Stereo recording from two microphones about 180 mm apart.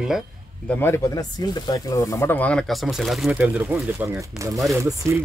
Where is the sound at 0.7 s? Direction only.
10° left (ahead or behind).